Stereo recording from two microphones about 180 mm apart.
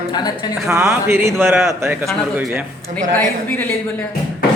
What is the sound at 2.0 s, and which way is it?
Speech, centre (ahead or behind).